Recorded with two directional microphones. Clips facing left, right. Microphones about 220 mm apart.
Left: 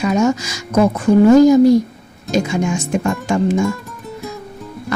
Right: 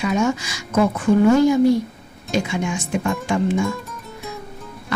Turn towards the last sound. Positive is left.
turn(degrees=45)  # may be behind; listen again after turning